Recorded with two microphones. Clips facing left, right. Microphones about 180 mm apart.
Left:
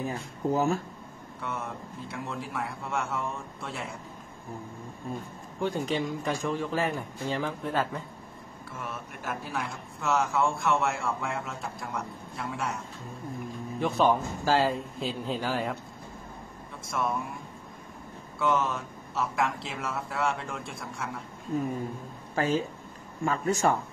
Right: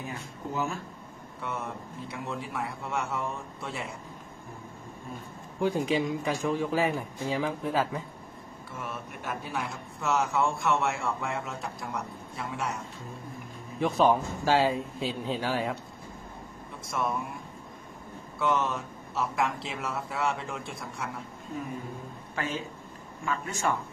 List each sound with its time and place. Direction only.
0.0 s speech: 40° left (ahead or behind)
1.4 s speech: centre (ahead or behind)
5.6 s speech: centre (ahead or behind)
16.8 s speech: centre (ahead or behind)
18.4 s speech: centre (ahead or behind)
22.3 s speech: 35° left (ahead or behind)